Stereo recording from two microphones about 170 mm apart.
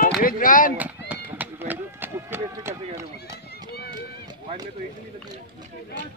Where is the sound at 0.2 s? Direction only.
55° left (ahead or behind).